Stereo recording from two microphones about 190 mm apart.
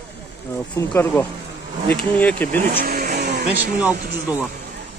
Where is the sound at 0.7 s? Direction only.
10° left (ahead or behind).